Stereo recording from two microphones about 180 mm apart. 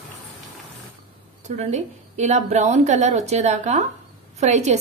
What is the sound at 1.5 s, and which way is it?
A woman's voice, 40° right (ahead or behind).